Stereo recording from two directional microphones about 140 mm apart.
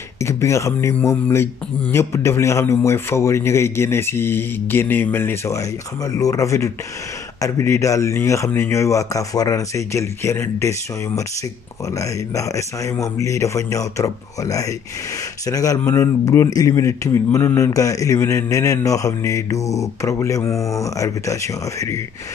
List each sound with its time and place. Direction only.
0.2 s speech: 20° left (ahead or behind)